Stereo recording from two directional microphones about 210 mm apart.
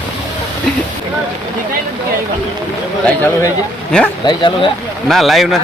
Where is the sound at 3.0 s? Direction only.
10° left (ahead or behind).